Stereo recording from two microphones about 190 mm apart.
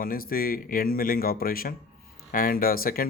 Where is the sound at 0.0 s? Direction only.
50° left (ahead or behind).